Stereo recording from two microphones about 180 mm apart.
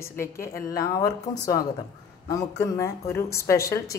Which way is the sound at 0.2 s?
15° left (ahead or behind).